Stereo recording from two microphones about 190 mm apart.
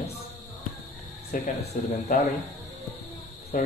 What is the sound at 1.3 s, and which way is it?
Speech, 45° left (ahead or behind).